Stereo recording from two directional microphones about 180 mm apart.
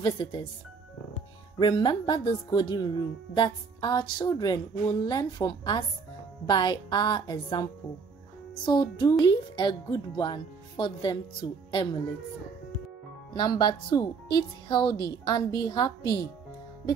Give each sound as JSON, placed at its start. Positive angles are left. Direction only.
{"t": 0.0, "sound": "speech", "side_deg": 20}
{"t": 1.6, "sound": "speech", "side_deg": 25}
{"t": 13.3, "sound": "speech", "side_deg": 25}